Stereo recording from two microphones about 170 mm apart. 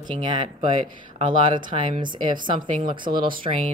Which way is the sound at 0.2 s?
30° right (ahead or behind).